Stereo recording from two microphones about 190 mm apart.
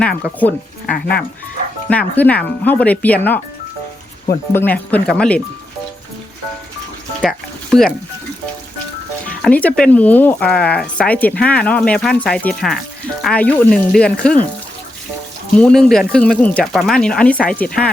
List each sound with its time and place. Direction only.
0.0 s speech: 5° left (ahead or behind)
0.9 s speech: 55° left (ahead or behind)
1.9 s speech: 10° left (ahead or behind)
4.5 s speech: 10° left (ahead or behind)
7.2 s music: centre (ahead or behind)
9.4 s speech: 10° left (ahead or behind)
15.5 s speech: 5° left (ahead or behind)